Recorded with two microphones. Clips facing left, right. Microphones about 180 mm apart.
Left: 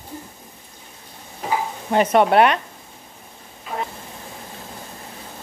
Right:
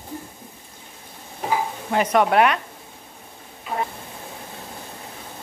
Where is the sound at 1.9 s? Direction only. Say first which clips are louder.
Left 3 dB; 30° left (ahead or behind).